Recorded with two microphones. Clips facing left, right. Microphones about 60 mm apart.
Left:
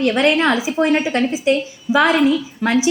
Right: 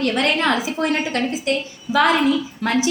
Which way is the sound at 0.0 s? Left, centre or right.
Centre.